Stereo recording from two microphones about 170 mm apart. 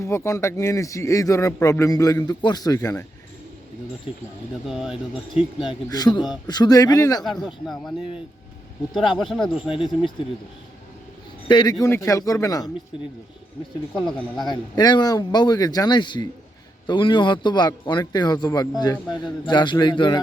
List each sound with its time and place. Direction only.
0.0 s a man's voice: 15° left (ahead or behind)
4.6 s speech: 5° right (ahead or behind)
5.9 s a man's voice: 25° left (ahead or behind)
7.4 s speech: centre (ahead or behind)
9.1 s speech: centre (ahead or behind)
9.6 s a man's voice: 30° left (ahead or behind)
11.4 s a man's voice: 25° left (ahead or behind)
13.9 s speech: 5° left (ahead or behind)
14.3 s a man's voice: 25° left (ahead or behind)